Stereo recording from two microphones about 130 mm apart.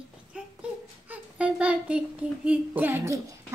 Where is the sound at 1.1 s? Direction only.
10° right (ahead or behind).